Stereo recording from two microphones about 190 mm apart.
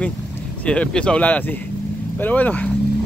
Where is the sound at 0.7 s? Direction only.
5° left (ahead or behind).